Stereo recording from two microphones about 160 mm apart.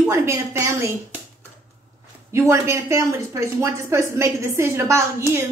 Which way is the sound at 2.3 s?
20° right (ahead or behind).